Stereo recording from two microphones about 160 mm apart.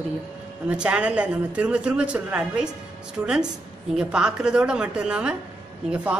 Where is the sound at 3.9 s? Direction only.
5° right (ahead or behind).